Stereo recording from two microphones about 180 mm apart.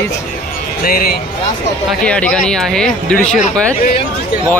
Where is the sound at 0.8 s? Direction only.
55° left (ahead or behind).